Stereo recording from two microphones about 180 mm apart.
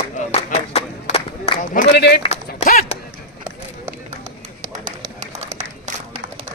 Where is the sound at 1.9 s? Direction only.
65° left (ahead or behind).